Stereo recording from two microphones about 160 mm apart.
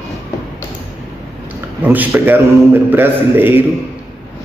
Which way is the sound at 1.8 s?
10° right (ahead or behind).